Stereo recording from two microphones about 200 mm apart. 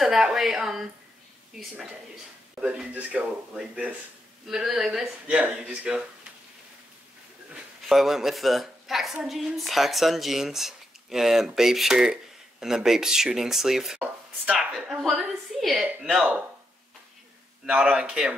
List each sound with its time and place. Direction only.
0.0 s a woman's voice: centre (ahead or behind)
7.5 s a woman's voice: centre (ahead or behind)
17.6 s a woman's voice: 5° right (ahead or behind)